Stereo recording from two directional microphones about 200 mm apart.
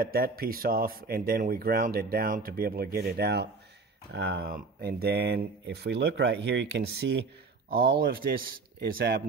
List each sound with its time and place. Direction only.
0.0 s speech: 50° right (ahead or behind)
7.7 s speech: 50° right (ahead or behind)